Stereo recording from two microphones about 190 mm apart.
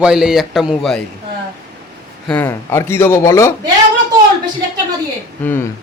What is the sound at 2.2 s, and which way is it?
Speech, 10° left (ahead or behind).